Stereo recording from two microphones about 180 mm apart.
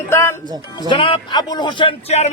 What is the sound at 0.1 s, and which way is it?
Music, 15° left (ahead or behind).